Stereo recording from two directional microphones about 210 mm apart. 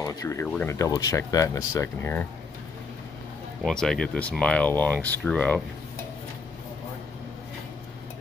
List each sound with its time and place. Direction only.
0.0 s speech: 15° left (ahead or behind)
3.6 s speech: centre (ahead or behind)